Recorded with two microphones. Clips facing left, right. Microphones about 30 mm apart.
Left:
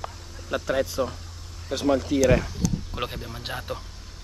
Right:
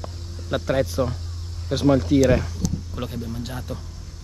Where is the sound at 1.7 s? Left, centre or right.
Right.